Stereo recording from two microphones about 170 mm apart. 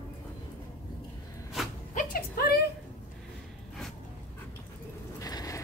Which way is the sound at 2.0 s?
60° left (ahead or behind).